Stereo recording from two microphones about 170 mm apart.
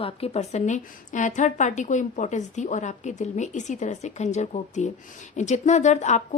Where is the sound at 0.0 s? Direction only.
35° left (ahead or behind).